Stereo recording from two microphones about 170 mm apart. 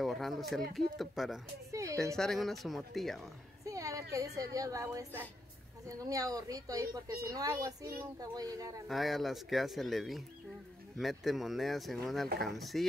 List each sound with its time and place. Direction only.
0.0 s speech: centre (ahead or behind)
1.7 s a woman's voice: 20° right (ahead or behind)
2.1 s speech: centre (ahead or behind)
3.6 s a sound: 20° right (ahead or behind)
4.4 s a woman's voice: 20° right (ahead or behind)
8.8 s speech: centre (ahead or behind)